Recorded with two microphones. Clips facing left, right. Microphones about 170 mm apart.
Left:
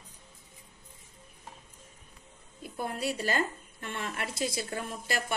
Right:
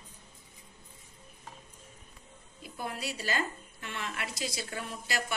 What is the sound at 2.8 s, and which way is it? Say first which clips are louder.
Speech: left 5 dB; 50° left (ahead or behind).